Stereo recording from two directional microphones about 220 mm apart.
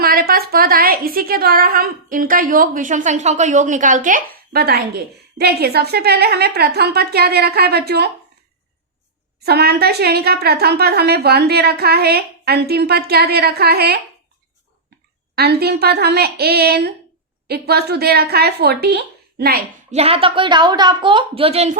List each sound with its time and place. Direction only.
0.0 s a woman's voice: 40° right (ahead or behind)
9.4 s a woman's voice: 45° right (ahead or behind)
15.4 s a woman's voice: 45° right (ahead or behind)
19.9 s speech: 25° right (ahead or behind)